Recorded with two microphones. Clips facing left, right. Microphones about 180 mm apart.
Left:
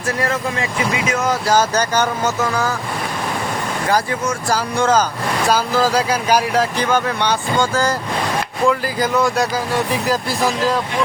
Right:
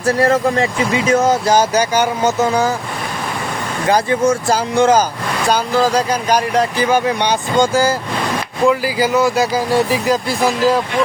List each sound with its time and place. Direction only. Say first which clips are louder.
0.2 s speech: right 8 dB; 35° right (ahead or behind)
1.5 s speech: right 3 dB; 15° right (ahead or behind)
2.4 s speech: right 6 dB; 20° right (ahead or behind)
3.8 s speech: right 6 dB; 20° right (ahead or behind)
5.5 s speech: right 2 dB; centre (ahead or behind)
6.8 s speech: right 3 dB; 15° right (ahead or behind)